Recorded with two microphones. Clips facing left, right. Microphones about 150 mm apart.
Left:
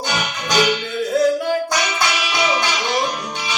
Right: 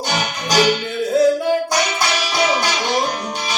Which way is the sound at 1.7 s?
40° right (ahead or behind).